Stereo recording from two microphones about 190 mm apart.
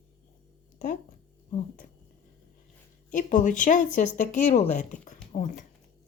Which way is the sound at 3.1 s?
40° left (ahead or behind).